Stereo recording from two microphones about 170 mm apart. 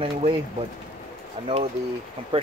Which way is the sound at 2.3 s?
30° right (ahead or behind).